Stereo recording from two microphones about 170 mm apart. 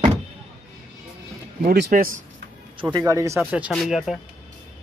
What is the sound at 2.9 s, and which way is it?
Speech, 20° right (ahead or behind).